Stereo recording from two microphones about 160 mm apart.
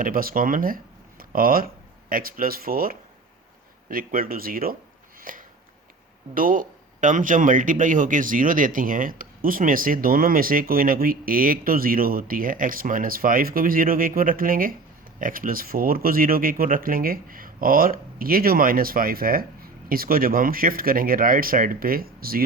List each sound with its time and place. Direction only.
0.0 s speech: 65° right (ahead or behind)
5.3 s a sound: 60° right (ahead or behind)
6.3 s speech: 60° right (ahead or behind)